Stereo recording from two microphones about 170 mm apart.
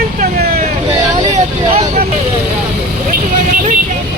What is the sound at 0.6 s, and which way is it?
Speech, 40° right (ahead or behind).